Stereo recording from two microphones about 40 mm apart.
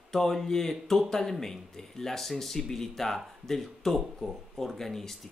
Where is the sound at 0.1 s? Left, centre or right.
Centre.